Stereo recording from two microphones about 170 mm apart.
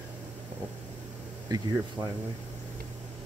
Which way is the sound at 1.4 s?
20° right (ahead or behind).